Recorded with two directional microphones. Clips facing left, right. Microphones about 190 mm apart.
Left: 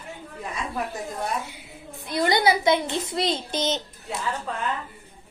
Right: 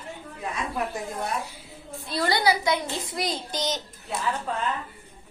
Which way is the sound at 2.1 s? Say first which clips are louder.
Left 3 dB; 20° left (ahead or behind).